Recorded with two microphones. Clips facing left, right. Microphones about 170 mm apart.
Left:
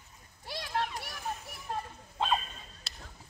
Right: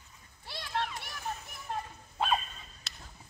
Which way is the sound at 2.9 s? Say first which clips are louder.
Left 1 dB; 30° left (ahead or behind).